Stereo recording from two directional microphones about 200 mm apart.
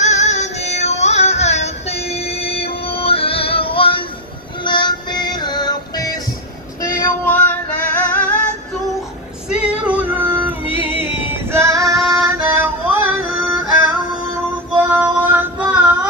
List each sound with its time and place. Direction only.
0.0 s music: 35° left (ahead or behind); by 6.2 s 20° left (ahead or behind)
6.8 s female singing: 10° left (ahead or behind)
9.5 s female singing: 5° right (ahead or behind)
11.5 s female singing: 15° right (ahead or behind)
12.2 s music: 10° right (ahead or behind)
14.8 s child singing: 10° right (ahead or behind)